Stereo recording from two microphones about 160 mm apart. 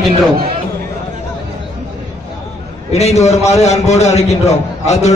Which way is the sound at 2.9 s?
40° left (ahead or behind).